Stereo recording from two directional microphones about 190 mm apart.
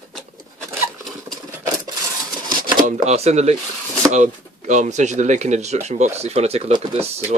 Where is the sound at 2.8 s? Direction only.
35° right (ahead or behind).